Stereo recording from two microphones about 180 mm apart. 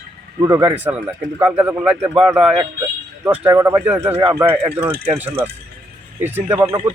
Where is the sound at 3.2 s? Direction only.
10° right (ahead or behind).